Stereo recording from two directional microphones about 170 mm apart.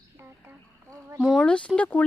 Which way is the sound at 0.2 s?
15° right (ahead or behind).